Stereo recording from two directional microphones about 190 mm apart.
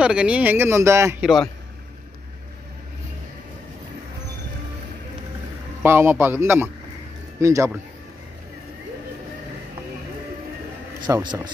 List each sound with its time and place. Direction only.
0.0 s speech: 5° right (ahead or behind)
1.2 s a man's voice: centre (ahead or behind)
5.8 s speech: 10° right (ahead or behind)
11.1 s speech: 15° right (ahead or behind)